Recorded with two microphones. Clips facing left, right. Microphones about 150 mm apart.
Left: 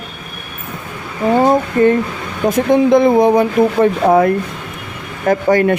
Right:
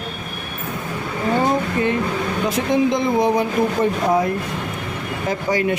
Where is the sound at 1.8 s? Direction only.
50° left (ahead or behind).